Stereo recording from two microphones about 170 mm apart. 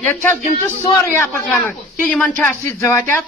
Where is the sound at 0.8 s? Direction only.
10° left (ahead or behind).